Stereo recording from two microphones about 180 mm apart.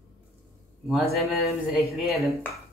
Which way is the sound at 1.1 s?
Centre (ahead or behind).